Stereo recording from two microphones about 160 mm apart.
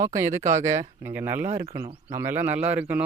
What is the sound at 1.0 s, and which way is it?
Speech, 15° right (ahead or behind).